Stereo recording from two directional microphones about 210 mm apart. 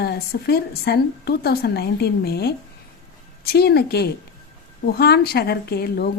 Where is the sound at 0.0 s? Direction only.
50° left (ahead or behind).